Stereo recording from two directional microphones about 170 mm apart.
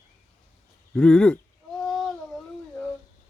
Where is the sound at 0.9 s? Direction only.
5° left (ahead or behind).